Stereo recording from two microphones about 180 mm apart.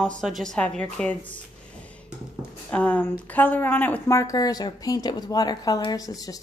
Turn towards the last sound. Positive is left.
turn(degrees=20)  # may be behind; listen again after turning